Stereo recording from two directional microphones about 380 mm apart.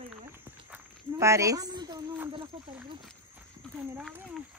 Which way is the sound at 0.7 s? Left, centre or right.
Centre.